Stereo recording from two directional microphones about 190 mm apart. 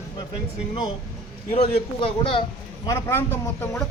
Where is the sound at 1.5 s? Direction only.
35° left (ahead or behind).